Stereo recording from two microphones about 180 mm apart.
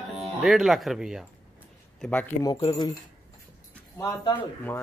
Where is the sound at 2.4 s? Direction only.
25° left (ahead or behind).